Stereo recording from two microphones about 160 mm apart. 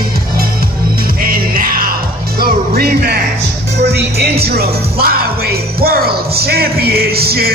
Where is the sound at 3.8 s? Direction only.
90° right.